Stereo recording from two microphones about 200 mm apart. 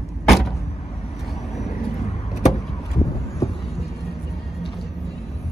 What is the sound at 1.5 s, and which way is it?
Vehicle, 35° left (ahead or behind).